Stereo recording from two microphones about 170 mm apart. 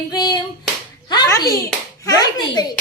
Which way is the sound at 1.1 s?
20° left (ahead or behind).